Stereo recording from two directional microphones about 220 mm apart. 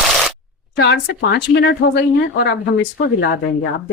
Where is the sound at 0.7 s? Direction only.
50° left (ahead or behind).